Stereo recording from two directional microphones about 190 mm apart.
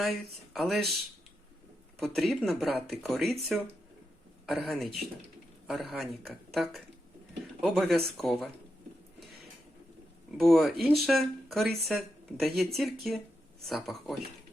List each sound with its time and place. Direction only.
0.0 s speech: centre (ahead or behind)
2.0 s speech: centre (ahead or behind)
10.3 s speech: centre (ahead or behind)